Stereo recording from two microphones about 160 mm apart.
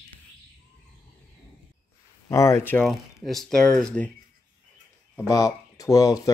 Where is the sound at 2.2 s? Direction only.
20° left (ahead or behind).